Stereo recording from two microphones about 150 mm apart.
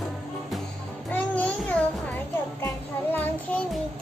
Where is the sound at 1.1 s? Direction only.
10° left (ahead or behind).